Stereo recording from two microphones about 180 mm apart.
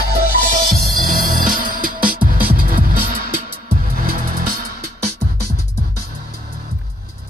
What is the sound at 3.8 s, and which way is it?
Music, 55° right (ahead or behind).